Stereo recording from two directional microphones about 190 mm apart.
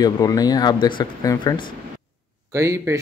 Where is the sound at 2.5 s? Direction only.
15° right (ahead or behind).